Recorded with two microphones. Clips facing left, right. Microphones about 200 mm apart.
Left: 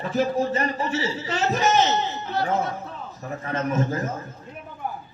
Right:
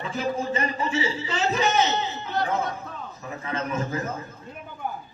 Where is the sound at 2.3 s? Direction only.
Centre (ahead or behind).